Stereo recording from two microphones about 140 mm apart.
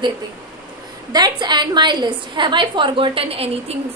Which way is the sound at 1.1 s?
30° right (ahead or behind).